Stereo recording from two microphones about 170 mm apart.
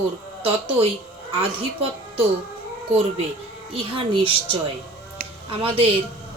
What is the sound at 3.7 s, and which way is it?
A woman's voice, 30° right (ahead or behind).